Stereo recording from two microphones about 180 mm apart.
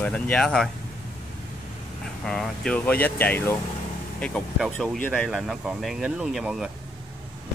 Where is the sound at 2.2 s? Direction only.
5° left (ahead or behind).